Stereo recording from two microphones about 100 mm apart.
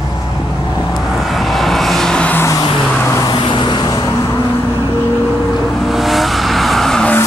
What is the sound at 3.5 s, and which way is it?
Vehicle, 55° left (ahead or behind).